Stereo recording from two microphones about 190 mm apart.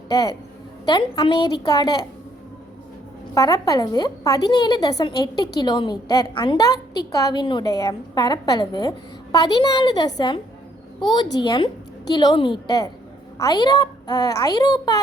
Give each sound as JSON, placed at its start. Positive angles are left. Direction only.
{"t": 0.1, "sound": "a woman's voice", "side_deg": 20}
{"t": 3.3, "sound": "a woman's voice", "side_deg": 20}